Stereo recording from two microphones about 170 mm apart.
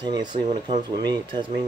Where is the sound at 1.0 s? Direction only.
25° right (ahead or behind).